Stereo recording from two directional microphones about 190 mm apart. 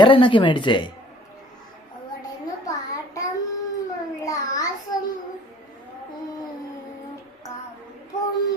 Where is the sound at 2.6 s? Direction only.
15° left (ahead or behind).